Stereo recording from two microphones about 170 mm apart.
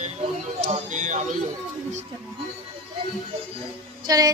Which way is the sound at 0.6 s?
45° right (ahead or behind).